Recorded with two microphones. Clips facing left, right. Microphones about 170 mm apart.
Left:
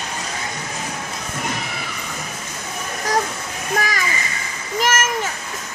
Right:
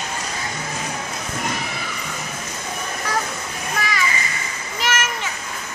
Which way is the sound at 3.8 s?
40° left (ahead or behind).